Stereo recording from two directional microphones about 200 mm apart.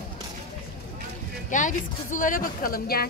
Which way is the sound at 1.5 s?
40° left (ahead or behind).